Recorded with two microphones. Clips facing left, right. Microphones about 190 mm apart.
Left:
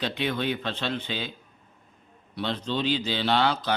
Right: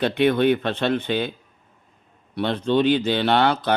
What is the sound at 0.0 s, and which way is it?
Speech, 55° right (ahead or behind).